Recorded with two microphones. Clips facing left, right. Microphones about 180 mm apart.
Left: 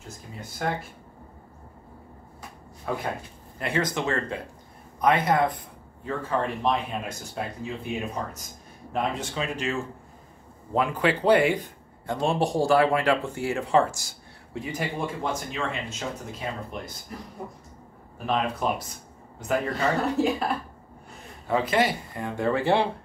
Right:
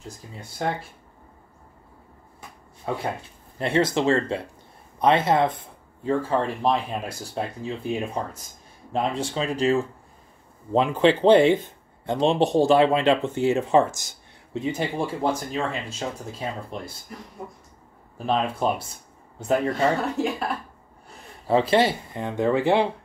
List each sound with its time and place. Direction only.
0.6 s speech: 25° right (ahead or behind)
3.5 s speech: 25° right (ahead or behind)
18.1 s speech: 30° right (ahead or behind)
20.2 s speech: centre (ahead or behind)
21.5 s speech: 30° right (ahead or behind)